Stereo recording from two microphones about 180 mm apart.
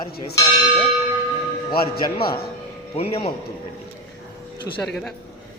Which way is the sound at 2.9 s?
35° left (ahead or behind).